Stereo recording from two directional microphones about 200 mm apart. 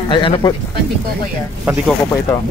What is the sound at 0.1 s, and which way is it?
Speech, 20° left (ahead or behind).